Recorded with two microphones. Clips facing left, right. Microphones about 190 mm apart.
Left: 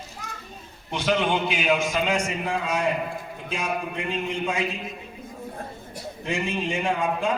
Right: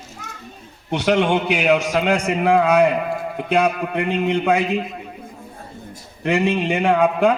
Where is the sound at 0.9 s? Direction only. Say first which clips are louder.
Right 6 dB; 70° right (ahead or behind).